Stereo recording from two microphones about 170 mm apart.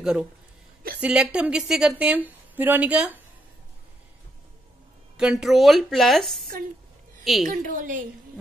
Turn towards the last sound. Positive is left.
turn(degrees=-55)  # may be behind; listen again after turning